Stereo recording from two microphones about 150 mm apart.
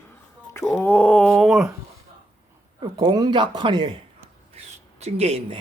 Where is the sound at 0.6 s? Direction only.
Centre (ahead or behind).